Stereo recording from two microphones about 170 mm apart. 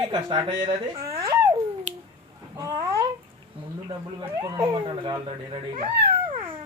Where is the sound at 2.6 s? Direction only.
20° right (ahead or behind).